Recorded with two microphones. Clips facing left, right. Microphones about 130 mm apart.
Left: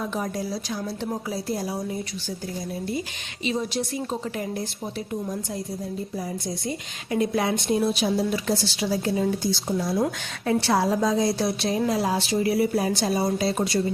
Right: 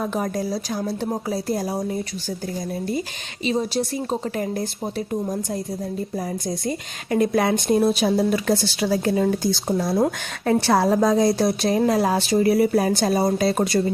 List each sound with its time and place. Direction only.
0.0 s a woman's voice: 50° right (ahead or behind)
3.4 s a woman's voice: 35° right (ahead or behind)
6.7 s a woman's voice: 50° right (ahead or behind)
9.9 s a woman's voice: 40° right (ahead or behind)